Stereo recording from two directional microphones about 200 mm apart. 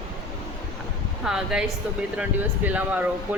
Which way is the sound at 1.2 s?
5° right (ahead or behind).